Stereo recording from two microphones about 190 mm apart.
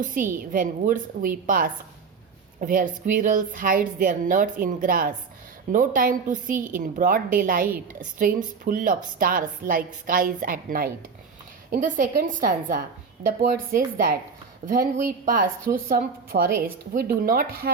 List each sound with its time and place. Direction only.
0.0 s a woman's voice: 45° right (ahead or behind)